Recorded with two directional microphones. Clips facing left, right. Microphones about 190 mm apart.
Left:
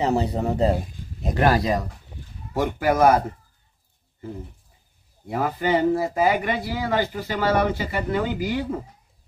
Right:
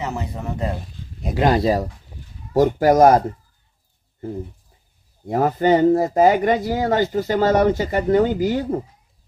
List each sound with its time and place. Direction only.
0.0 s a man's voice: 35° left (ahead or behind)
1.3 s speech: 15° right (ahead or behind)
1.6 s speech: 35° right (ahead or behind)
5.2 s speech: 45° right (ahead or behind)